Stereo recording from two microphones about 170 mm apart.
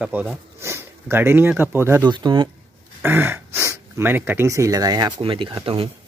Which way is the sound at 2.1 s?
25° right (ahead or behind).